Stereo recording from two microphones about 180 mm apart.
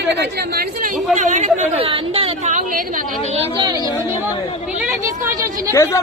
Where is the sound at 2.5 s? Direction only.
50° right (ahead or behind).